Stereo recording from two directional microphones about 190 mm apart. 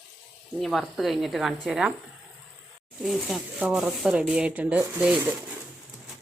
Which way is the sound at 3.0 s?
Centre (ahead or behind).